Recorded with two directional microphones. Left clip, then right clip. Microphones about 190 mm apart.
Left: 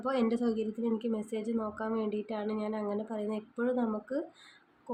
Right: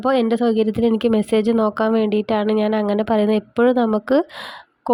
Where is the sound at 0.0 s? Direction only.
45° right (ahead or behind).